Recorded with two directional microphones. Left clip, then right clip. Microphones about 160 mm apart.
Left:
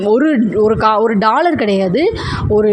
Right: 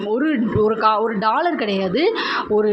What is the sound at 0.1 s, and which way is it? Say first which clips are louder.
A woman's voice: left 7 dB; 45° left (ahead or behind).